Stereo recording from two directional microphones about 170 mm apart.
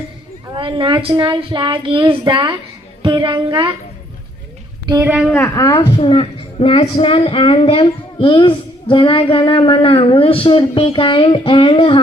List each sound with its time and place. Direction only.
0.5 s speech: 30° right (ahead or behind)
5.3 s a woman's voice: 15° left (ahead or behind); by 11.9 s 30° left (ahead or behind)